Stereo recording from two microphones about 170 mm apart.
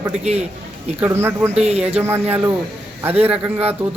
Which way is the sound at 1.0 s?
15° right (ahead or behind).